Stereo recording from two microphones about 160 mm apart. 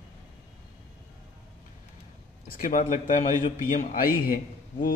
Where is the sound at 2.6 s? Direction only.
55° left (ahead or behind).